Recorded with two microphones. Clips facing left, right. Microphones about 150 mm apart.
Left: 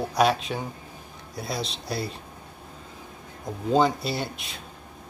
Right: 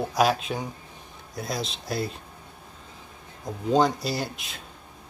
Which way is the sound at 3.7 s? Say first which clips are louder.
Even; centre (ahead or behind).